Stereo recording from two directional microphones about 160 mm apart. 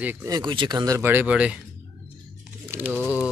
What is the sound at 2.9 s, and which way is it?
Speech, 10° left (ahead or behind).